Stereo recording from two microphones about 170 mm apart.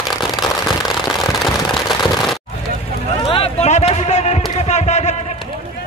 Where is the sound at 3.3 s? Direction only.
35° left (ahead or behind).